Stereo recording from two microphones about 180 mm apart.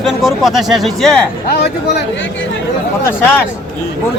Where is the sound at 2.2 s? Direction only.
90° left.